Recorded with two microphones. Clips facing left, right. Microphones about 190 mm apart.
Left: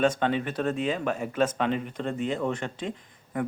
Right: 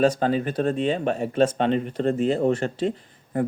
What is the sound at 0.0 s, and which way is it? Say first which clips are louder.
Speech: right 4 dB; 35° right (ahead or behind).